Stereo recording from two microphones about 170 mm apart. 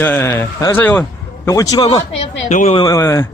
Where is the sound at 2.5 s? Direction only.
45° left (ahead or behind).